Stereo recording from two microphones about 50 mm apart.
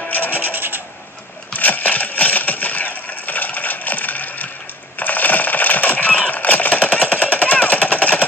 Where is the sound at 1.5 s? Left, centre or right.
Left.